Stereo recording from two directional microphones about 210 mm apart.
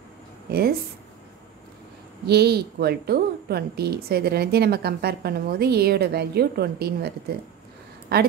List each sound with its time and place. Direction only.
0.5 s speech: 45° right (ahead or behind)
2.2 s a woman's voice: 50° right (ahead or behind)
8.1 s a woman's voice: 50° right (ahead or behind)